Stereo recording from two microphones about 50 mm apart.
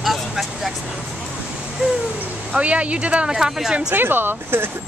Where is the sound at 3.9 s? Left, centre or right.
Right.